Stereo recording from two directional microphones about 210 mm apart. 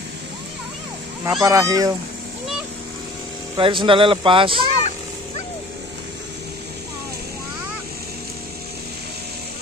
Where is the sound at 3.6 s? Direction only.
25° right (ahead or behind).